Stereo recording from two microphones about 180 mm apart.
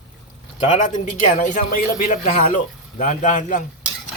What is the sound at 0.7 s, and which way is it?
Speech, 45° left (ahead or behind).